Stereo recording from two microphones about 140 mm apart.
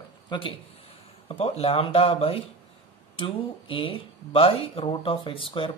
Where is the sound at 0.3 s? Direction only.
40° left (ahead or behind).